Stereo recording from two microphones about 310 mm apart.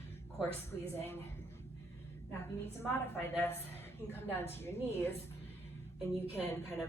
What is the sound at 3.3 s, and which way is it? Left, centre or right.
Speech, centre.